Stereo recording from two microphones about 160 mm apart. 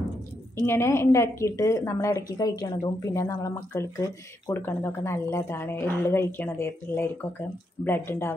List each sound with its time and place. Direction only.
0.6 s a woman's voice: 15° left (ahead or behind)